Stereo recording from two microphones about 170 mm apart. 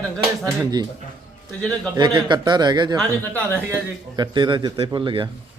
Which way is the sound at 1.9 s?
25° right (ahead or behind).